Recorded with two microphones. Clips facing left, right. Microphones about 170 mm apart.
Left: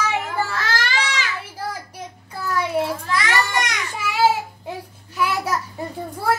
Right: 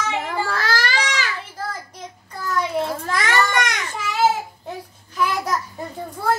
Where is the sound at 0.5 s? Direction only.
35° right (ahead or behind).